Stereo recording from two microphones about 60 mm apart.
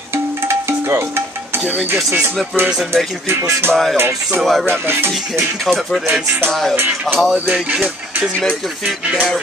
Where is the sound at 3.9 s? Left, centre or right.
Right.